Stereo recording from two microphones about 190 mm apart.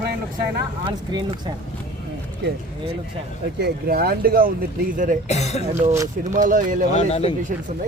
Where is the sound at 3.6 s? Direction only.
55° right (ahead or behind).